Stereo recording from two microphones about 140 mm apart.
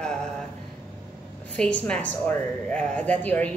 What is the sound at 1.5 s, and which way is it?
A woman's voice, 5° left (ahead or behind).